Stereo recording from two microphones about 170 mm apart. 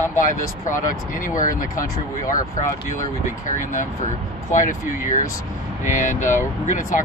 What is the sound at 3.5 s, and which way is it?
Speech, 50° left (ahead or behind).